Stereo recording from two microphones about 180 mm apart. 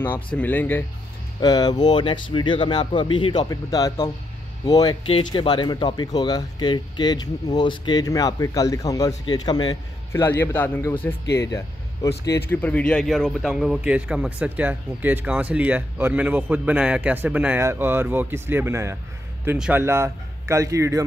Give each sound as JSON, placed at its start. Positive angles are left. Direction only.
{"t": 0.4, "sound": "a man's voice", "side_deg": 10}
{"t": 1.4, "sound": "speech", "side_deg": 20}
{"t": 10.2, "sound": "a man's voice", "side_deg": 10}
{"t": 12.3, "sound": "a man's voice", "side_deg": 10}